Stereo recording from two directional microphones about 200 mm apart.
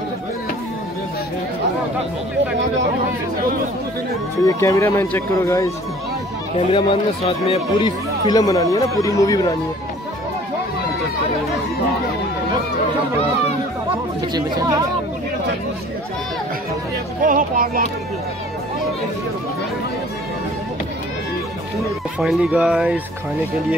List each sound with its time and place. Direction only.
4.5 s speech: 15° left (ahead or behind)
6.5 s speech: 25° left (ahead or behind)
17.2 s speech: 40° right (ahead or behind)
22.2 s speech: 5° right (ahead or behind)